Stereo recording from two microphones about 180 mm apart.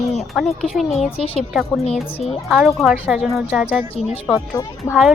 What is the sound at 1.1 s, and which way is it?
Speech, 35° left (ahead or behind).